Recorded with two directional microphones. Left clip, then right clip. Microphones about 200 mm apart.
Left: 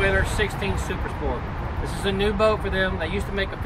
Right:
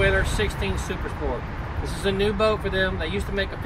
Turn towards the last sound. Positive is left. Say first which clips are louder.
# even
turn(degrees=10)  # may be behind; listen again after turning